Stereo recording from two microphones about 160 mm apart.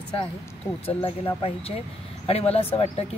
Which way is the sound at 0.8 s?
35° left (ahead or behind).